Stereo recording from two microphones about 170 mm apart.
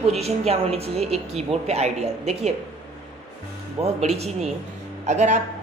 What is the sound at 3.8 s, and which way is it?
A woman's voice, 40° right (ahead or behind).